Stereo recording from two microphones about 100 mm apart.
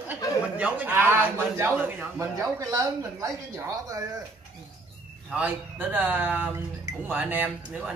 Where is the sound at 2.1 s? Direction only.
30° right (ahead or behind).